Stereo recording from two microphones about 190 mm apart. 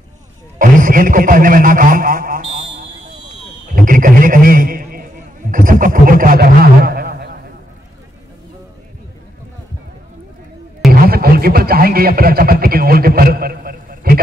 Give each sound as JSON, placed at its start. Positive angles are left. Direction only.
{"t": 0.6, "sound": "speech", "side_deg": -45}
{"t": 3.7, "sound": "a sound", "side_deg": -45}
{"t": 5.5, "sound": "speech", "side_deg": -45}
{"t": 11.1, "sound": "speech", "side_deg": -50}